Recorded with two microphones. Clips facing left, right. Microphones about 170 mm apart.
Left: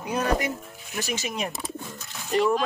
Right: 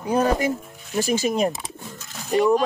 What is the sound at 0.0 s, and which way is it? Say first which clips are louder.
Speech: right 5 dB; 30° right (ahead or behind).